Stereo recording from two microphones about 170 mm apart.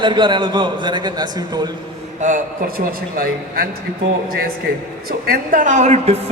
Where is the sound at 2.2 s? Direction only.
55° right (ahead or behind).